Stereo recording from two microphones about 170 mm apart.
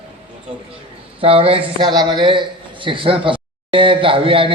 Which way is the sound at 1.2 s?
35° right (ahead or behind).